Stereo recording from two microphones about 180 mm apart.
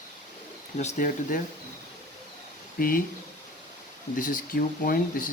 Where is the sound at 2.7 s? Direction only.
50° left (ahead or behind).